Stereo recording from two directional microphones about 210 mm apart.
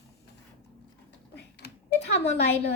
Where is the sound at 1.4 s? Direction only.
50° left (ahead or behind).